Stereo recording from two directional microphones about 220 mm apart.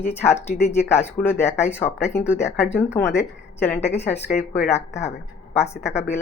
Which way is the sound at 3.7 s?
30° left (ahead or behind).